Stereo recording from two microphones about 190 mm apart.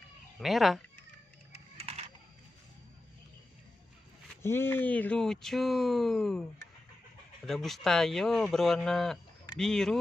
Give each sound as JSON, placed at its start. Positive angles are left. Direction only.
{"t": 0.4, "sound": "speech", "side_deg": 0}
{"t": 1.8, "sound": "typing", "side_deg": -35}
{"t": 4.4, "sound": "speech", "side_deg": 10}
{"t": 7.4, "sound": "speech", "side_deg": 0}